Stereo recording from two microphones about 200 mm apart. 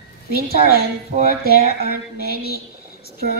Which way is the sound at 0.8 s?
50° right (ahead or behind).